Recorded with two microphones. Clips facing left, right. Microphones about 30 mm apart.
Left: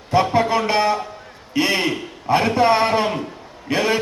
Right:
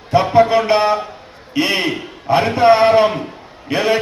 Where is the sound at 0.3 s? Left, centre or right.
Right.